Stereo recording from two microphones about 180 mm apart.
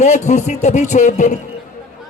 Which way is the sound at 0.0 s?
40° left (ahead or behind).